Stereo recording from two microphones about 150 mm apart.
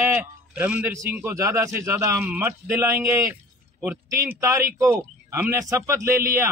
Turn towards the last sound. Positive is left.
turn(degrees=-20)  # may be behind; listen again after turning